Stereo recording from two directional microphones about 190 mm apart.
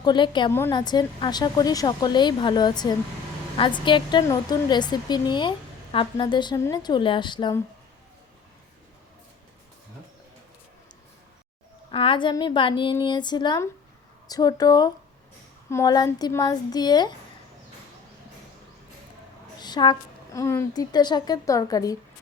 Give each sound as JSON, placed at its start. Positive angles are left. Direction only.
{"t": 0.0, "sound": "speech", "side_deg": 25}
{"t": 11.9, "sound": "speech", "side_deg": 25}
{"t": 19.5, "sound": "speech", "side_deg": 20}